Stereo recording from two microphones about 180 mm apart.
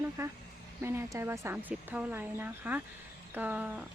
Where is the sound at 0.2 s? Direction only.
15° right (ahead or behind).